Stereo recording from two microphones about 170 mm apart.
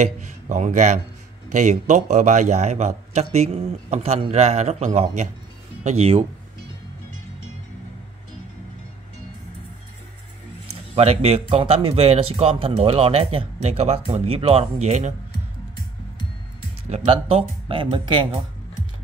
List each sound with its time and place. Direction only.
0.0 s speech: 45° right (ahead or behind)
11.0 s speech: 35° right (ahead or behind)
16.9 s speech: 35° right (ahead or behind)